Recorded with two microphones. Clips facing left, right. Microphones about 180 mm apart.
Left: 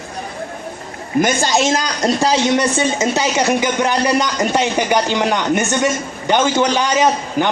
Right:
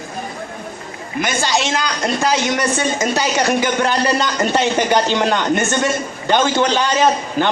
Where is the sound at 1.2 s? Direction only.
45° left (ahead or behind).